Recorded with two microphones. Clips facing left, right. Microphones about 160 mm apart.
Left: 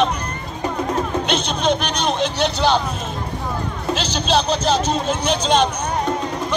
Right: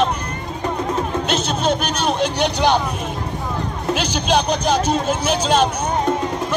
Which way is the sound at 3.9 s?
10° right (ahead or behind).